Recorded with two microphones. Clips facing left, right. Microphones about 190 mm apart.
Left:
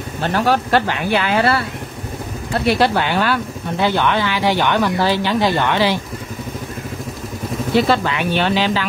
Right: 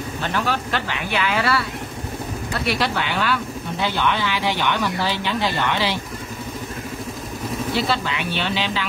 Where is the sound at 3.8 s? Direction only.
50° left (ahead or behind).